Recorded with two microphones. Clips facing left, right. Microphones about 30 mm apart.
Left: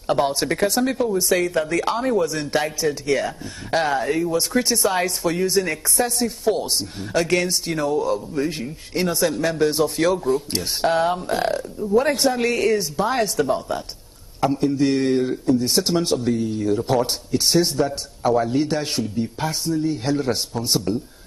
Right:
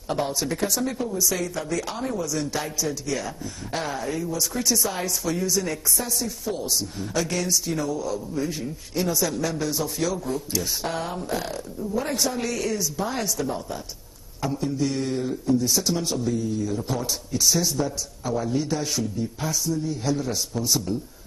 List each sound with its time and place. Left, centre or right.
0.3 s speech: left
7.2 s speech: left